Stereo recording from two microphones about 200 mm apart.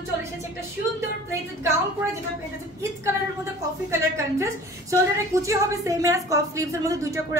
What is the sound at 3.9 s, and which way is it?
A woman's voice, 15° right (ahead or behind).